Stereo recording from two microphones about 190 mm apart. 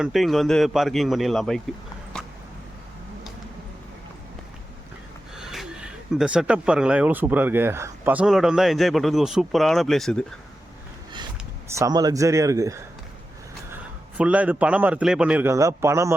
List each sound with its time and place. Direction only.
0.0 s speech: centre (ahead or behind)
2.1 s a sound: 5° left (ahead or behind)
5.4 s speech: centre (ahead or behind)
11.7 s a man's voice: 20° right (ahead or behind)
14.2 s a man's voice: 5° right (ahead or behind)